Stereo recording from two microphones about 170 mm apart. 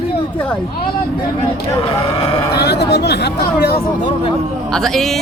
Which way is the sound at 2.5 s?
75° left (ahead or behind).